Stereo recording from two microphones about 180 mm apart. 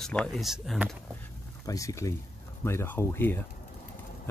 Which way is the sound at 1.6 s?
20° left (ahead or behind).